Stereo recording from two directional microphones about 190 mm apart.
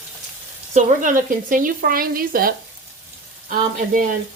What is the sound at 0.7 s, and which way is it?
Speech, 45° right (ahead or behind).